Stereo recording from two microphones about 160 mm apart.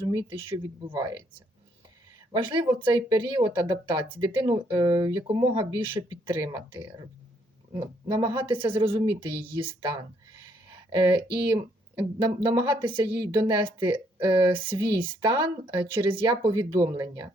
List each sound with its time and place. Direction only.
0.3 s speech: 30° right (ahead or behind)
2.3 s speech: 30° right (ahead or behind)